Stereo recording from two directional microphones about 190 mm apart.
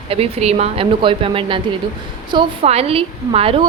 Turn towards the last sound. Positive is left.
turn(degrees=-30)  # may be behind; listen again after turning